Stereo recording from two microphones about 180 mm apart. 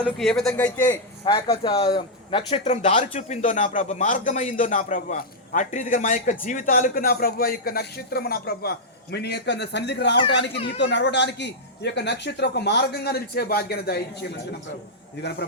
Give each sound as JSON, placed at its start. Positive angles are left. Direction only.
{"t": 0.0, "sound": "a man's voice", "side_deg": 5}
{"t": 1.2, "sound": "a man's voice", "side_deg": 25}